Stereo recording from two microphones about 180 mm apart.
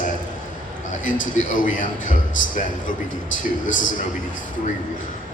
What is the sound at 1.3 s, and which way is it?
Speech, 45° left (ahead or behind).